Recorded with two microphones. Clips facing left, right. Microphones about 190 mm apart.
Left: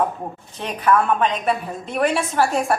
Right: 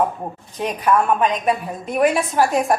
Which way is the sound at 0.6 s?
10° right (ahead or behind).